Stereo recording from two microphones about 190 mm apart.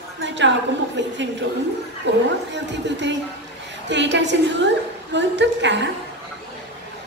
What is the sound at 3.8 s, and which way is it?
A woman's voice, 70° right (ahead or behind).